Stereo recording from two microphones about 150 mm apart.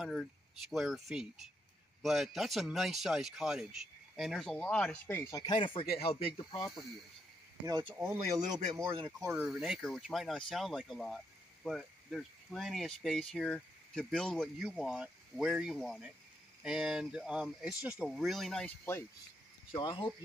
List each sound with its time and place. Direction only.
0.0 s speech: centre (ahead or behind); by 5.4 s 15° left (ahead or behind)
5.5 s speech: 35° left (ahead or behind)
6.3 s speech: 30° left (ahead or behind)
7.6 s speech: 25° right (ahead or behind)
7.9 s speech: 10° right (ahead or behind)
9.3 s speech: 5° right (ahead or behind)
19.7 s speech: 35° left (ahead or behind)